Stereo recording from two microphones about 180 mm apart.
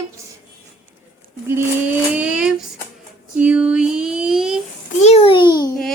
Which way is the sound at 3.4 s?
10° right (ahead or behind).